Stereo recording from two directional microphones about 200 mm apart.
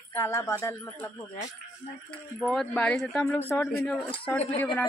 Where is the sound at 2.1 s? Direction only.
Centre (ahead or behind).